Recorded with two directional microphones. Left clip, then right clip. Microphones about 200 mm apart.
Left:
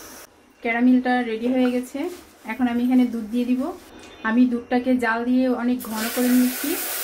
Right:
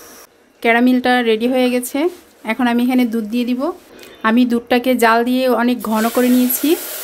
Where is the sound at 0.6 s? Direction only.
55° right (ahead or behind).